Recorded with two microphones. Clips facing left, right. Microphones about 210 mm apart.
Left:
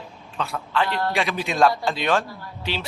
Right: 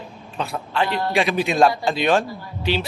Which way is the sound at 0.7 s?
15° right (ahead or behind).